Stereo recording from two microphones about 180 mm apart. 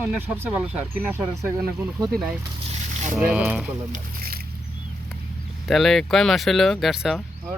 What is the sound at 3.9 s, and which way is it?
Boat, 55° right (ahead or behind).